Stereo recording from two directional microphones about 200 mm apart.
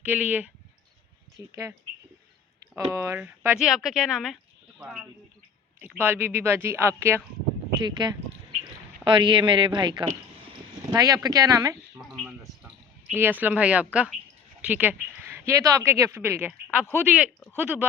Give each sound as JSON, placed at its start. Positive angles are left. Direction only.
{"t": 0.0, "sound": "speech", "side_deg": -5}
{"t": 2.7, "sound": "speech", "side_deg": -15}
{"t": 11.9, "sound": "a sound", "side_deg": 0}
{"t": 13.1, "sound": "speech", "side_deg": -10}